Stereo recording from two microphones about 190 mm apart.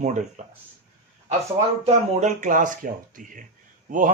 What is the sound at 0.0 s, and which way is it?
Speech, 40° right (ahead or behind).